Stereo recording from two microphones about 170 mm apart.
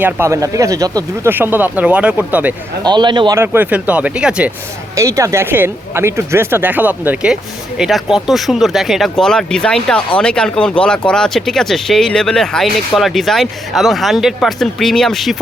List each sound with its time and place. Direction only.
0.0 s speech: 15° right (ahead or behind)
2.8 s a man's voice: 25° right (ahead or behind)
3.3 s speech: 15° right (ahead or behind)
4.9 s speech: 20° right (ahead or behind); by 15.4 s centre (ahead or behind)